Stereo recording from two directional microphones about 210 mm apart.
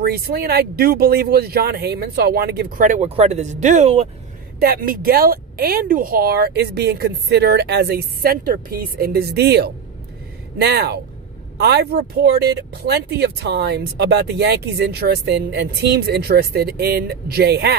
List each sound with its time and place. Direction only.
0.0 s speech: 45° right (ahead or behind); by 4.1 s 30° right (ahead or behind)
4.6 s speech: 45° right (ahead or behind)